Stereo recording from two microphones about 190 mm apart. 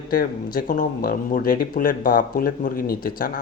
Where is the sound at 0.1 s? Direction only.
50° left (ahead or behind).